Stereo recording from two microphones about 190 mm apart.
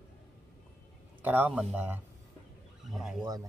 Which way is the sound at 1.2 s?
10° right (ahead or behind).